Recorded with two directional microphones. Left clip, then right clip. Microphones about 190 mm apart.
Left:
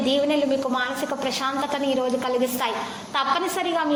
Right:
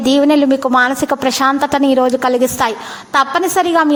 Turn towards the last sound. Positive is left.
turn(degrees=-45)  # may be behind; listen again after turning